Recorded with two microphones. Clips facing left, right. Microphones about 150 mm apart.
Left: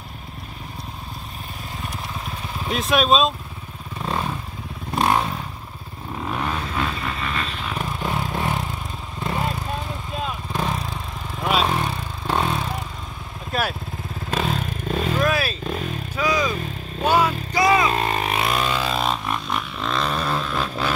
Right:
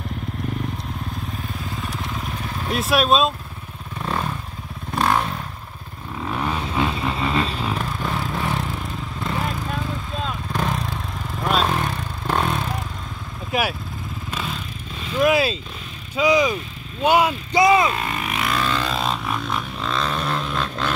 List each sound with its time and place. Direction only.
2.7 s speech: 5° right (ahead or behind)
4.9 s motorcycle: 20° left (ahead or behind)
6.4 s vehicle: 15° right (ahead or behind)
7.8 s vehicle: 20° left (ahead or behind)
10.2 s vehicle: 5° left (ahead or behind)
13.5 s vehicle: 10° right (ahead or behind)
14.3 s vehicle: 60° left (ahead or behind)
15.2 s vehicle: 20° right (ahead or behind)
15.6 s vehicle: 60° left (ahead or behind)
16.2 s vehicle: 20° right (ahead or behind)
17.9 s vehicle: 35° left (ahead or behind); by 18.8 s 20° left (ahead or behind)
18.8 s vehicle: centre (ahead or behind)
20.5 s a sound: 5° left (ahead or behind)